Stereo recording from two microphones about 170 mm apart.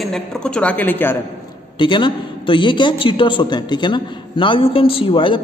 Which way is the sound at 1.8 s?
30° left (ahead or behind).